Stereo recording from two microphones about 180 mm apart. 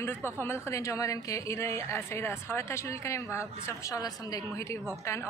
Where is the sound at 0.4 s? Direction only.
15° left (ahead or behind).